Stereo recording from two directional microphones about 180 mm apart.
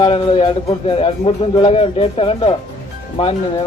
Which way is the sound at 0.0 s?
30° left (ahead or behind).